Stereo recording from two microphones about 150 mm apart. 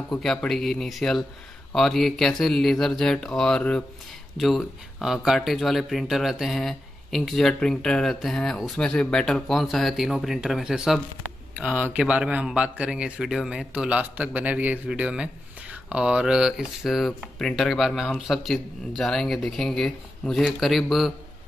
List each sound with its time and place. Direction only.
0.1 s speech: 5° left (ahead or behind)